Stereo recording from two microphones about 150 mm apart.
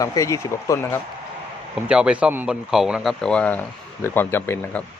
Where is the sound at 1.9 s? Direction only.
5° right (ahead or behind); by 4.8 s 15° left (ahead or behind).